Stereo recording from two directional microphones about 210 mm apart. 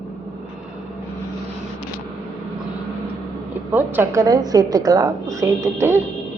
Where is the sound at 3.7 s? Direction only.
10° right (ahead or behind).